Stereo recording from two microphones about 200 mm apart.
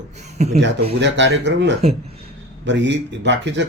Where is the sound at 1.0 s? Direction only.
65° right (ahead or behind).